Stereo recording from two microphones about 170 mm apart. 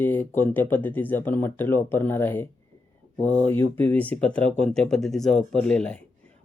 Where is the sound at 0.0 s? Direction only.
10° left (ahead or behind).